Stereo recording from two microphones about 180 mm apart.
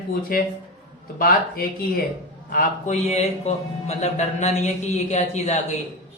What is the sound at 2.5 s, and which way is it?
A man's voice, 40° left (ahead or behind).